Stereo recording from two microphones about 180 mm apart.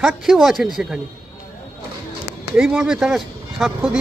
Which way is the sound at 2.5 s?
5° right (ahead or behind).